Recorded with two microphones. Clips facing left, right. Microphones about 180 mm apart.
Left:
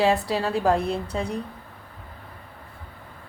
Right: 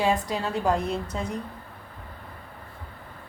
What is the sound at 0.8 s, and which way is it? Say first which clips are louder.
Speech: left 3 dB; 65° left (ahead or behind).